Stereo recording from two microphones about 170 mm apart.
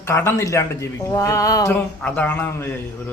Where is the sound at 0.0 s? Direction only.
15° left (ahead or behind).